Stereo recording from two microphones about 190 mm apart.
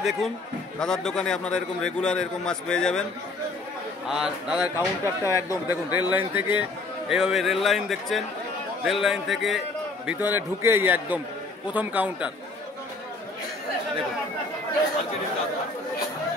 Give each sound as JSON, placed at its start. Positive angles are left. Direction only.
{"t": 0.7, "sound": "a man's voice", "side_deg": 5}
{"t": 4.1, "sound": "a man's voice", "side_deg": -5}
{"t": 4.7, "sound": "speech", "side_deg": 15}
{"t": 5.5, "sound": "a man's voice", "side_deg": -10}